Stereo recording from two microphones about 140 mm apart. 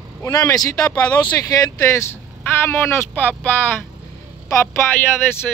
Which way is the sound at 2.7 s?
15° left (ahead or behind).